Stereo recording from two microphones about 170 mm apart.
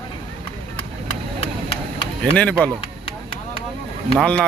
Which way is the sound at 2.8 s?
35° left (ahead or behind).